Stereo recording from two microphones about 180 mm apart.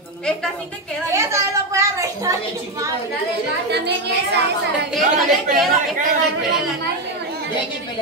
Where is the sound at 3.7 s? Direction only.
65° right (ahead or behind).